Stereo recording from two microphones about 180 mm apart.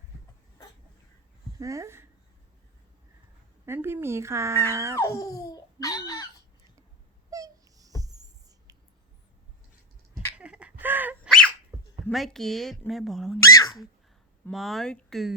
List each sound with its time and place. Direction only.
1.5 s speech: 15° right (ahead or behind)
3.7 s speech: 10° right (ahead or behind)
4.9 s baby laughter: 15° left (ahead or behind)
7.3 s a sound: 20° right (ahead or behind)
10.3 s a sound: 5° right (ahead or behind)
11.3 s dog: 5° left (ahead or behind)
11.7 s dog: 20° right (ahead or behind)
12.0 s speech: centre (ahead or behind)
13.4 s speech: 20° left (ahead or behind)
14.5 s speech: centre (ahead or behind)